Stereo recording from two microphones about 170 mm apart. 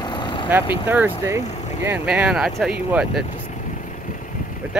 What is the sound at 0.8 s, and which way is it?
Speech, 10° right (ahead or behind).